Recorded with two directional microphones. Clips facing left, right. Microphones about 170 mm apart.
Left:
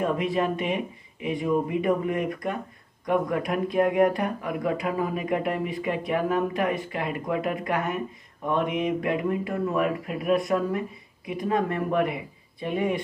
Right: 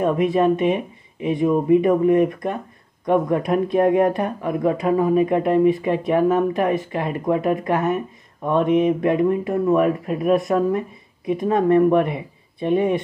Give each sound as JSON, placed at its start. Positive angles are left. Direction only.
{"t": 0.0, "sound": "speech", "side_deg": -25}